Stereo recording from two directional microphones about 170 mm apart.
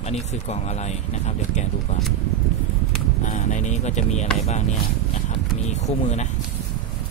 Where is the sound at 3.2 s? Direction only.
45° left (ahead or behind).